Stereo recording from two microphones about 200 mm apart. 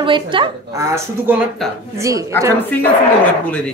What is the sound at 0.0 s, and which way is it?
A woman's voice, 25° right (ahead or behind).